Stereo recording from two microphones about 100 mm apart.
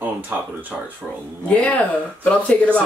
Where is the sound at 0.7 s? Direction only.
10° right (ahead or behind).